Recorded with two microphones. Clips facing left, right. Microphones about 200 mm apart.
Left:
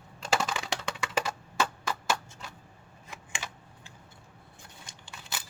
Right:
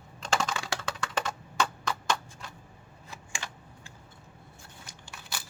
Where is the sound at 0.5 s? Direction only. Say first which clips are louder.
Even; 20° left (ahead or behind).